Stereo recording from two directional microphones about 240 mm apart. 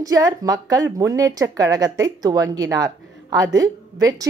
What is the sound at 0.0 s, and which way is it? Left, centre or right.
A woman's voice, centre.